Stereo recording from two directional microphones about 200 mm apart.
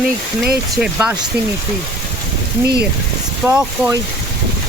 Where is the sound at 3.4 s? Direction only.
10° right (ahead or behind).